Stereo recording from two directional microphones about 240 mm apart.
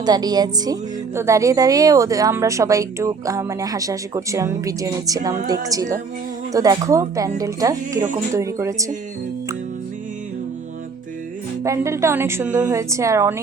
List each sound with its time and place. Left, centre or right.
0.0 s speech: centre
7.9 s speech: right
8.3 s speech: centre
11.6 s speech: centre